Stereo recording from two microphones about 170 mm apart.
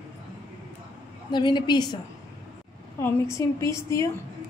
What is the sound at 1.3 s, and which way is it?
Speech, 25° left (ahead or behind).